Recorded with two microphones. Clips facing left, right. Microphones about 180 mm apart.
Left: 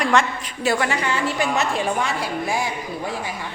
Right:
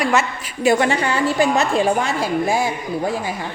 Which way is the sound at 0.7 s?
25° right (ahead or behind).